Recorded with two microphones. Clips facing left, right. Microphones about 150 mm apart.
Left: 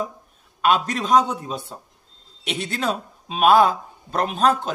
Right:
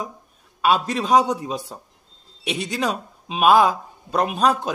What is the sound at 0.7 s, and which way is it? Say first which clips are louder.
Speech: even; 10° right (ahead or behind).